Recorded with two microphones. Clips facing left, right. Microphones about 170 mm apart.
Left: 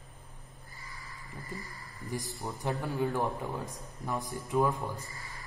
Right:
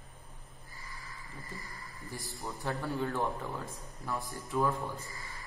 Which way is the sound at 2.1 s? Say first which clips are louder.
Left 5 dB; 20° left (ahead or behind).